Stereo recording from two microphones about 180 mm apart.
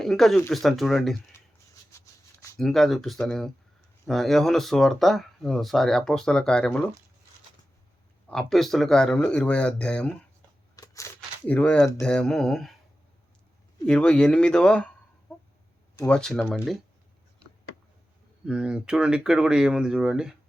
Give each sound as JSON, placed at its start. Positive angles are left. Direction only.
{"t": 0.0, "sound": "speech", "side_deg": 0}
{"t": 1.9, "sound": "a sound", "side_deg": 15}
{"t": 2.6, "sound": "speech", "side_deg": 0}
{"t": 8.3, "sound": "speech", "side_deg": 5}
{"t": 10.8, "sound": "a sound", "side_deg": 15}
{"t": 11.9, "sound": "speech", "side_deg": 5}
{"t": 13.8, "sound": "speech", "side_deg": 5}
{"t": 16.0, "sound": "speech", "side_deg": 5}
{"t": 18.4, "sound": "speech", "side_deg": -5}